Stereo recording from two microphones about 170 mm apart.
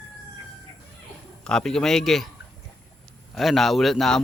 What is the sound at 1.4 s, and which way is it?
Speech, 5° left (ahead or behind).